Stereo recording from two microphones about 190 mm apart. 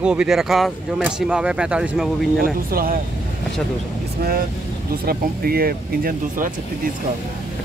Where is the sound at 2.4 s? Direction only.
50° right (ahead or behind).